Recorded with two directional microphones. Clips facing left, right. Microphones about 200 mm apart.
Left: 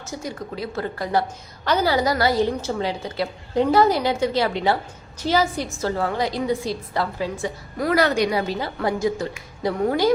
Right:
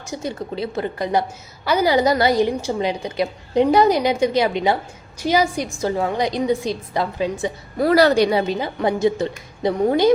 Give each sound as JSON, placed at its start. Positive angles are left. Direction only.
{"t": 0.0, "sound": "a woman's voice", "side_deg": -20}
{"t": 7.9, "sound": "a woman's voice", "side_deg": -35}